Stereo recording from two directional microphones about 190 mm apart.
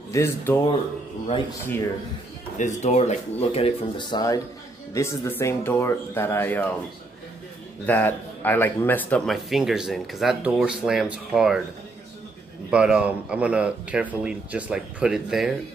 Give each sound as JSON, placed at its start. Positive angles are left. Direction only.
{"t": 0.1, "sound": "speech", "side_deg": 15}
{"t": 2.5, "sound": "speech", "side_deg": 40}
{"t": 7.8, "sound": "speech", "side_deg": 10}
{"t": 12.7, "sound": "speech", "side_deg": -5}